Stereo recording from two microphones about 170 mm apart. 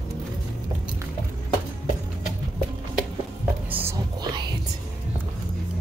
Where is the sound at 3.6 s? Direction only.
10° right (ahead or behind).